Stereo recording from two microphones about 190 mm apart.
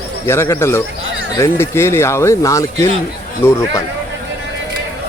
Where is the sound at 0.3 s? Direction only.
15° left (ahead or behind).